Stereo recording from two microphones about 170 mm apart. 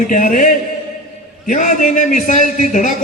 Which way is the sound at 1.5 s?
50° left (ahead or behind).